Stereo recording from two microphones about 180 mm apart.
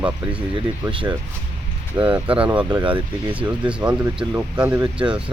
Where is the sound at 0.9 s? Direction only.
30° right (ahead or behind).